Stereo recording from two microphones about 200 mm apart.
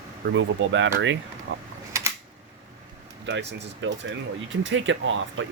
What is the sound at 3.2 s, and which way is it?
Speech, 65° right (ahead or behind).